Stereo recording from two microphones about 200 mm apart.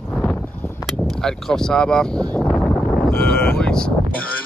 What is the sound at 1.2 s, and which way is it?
Speech, 5° left (ahead or behind).